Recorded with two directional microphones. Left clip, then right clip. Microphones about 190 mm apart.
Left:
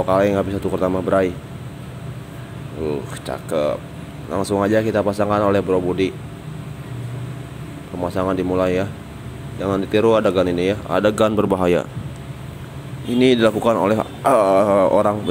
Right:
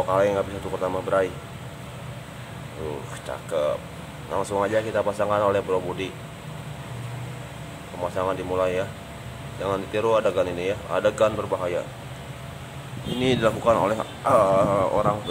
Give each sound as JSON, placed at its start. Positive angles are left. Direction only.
{"t": 0.0, "sound": "speech", "side_deg": 25}
{"t": 3.3, "sound": "speech", "side_deg": 20}
{"t": 8.0, "sound": "speech", "side_deg": 20}
{"t": 11.2, "sound": "speech", "side_deg": 50}
{"t": 13.2, "sound": "speech", "side_deg": 30}